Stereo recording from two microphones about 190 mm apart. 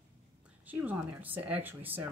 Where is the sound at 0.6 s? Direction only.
10° right (ahead or behind).